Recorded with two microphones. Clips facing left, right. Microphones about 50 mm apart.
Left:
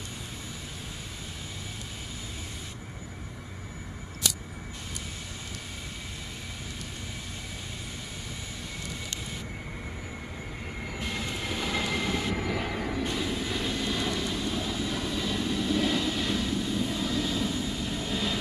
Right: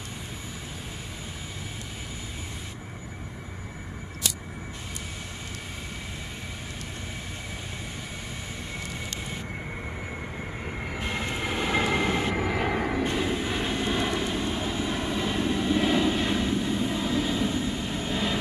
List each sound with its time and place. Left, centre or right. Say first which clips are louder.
10.6 s vehicle: right 2 dB; right